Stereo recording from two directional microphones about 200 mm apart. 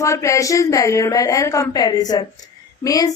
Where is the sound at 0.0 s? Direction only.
15° left (ahead or behind).